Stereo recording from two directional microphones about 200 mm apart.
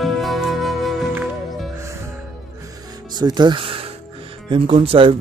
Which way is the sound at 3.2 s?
20° right (ahead or behind).